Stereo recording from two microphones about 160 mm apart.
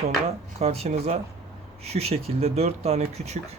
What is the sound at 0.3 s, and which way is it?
Speech, 40° right (ahead or behind).